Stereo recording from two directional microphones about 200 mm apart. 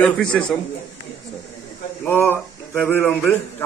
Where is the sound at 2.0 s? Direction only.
10° left (ahead or behind).